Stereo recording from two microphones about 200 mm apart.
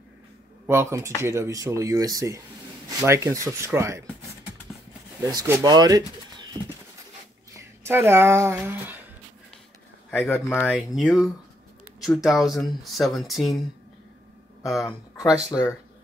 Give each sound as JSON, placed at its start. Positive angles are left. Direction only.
{"t": 0.7, "sound": "speech", "side_deg": -15}
{"t": 5.2, "sound": "speech", "side_deg": -15}
{"t": 7.5, "sound": "speech", "side_deg": -10}
{"t": 10.1, "sound": "speech", "side_deg": 10}
{"t": 11.0, "sound": "speech", "side_deg": 0}
{"t": 14.6, "sound": "speech", "side_deg": 0}